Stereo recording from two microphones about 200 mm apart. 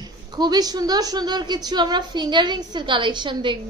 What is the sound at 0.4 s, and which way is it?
A woman's voice, 20° right (ahead or behind).